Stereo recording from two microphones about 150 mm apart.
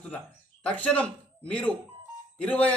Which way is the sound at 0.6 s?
10° left (ahead or behind).